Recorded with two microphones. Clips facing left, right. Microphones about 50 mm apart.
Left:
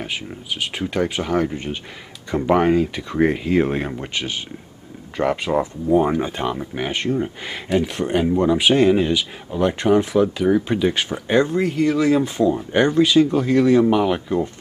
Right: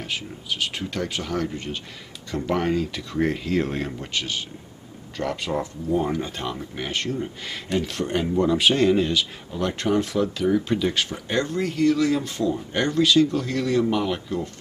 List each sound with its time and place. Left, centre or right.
0.0 s speech: centre